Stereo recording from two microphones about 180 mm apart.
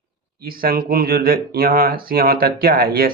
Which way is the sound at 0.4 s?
55° right (ahead or behind).